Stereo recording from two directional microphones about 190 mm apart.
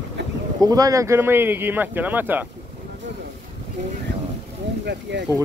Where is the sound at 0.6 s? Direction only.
20° right (ahead or behind).